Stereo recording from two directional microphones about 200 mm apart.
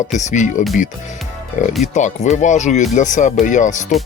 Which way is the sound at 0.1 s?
35° left (ahead or behind).